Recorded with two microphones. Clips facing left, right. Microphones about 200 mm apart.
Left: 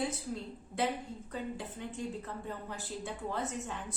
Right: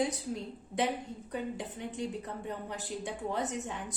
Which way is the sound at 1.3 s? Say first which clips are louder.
Right 3 dB; 20° right (ahead or behind).